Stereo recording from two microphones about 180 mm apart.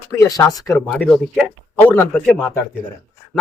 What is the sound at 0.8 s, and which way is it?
A man's voice, 5° left (ahead or behind).